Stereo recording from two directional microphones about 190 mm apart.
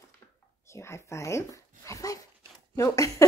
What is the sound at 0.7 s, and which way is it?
Speech, 15° left (ahead or behind).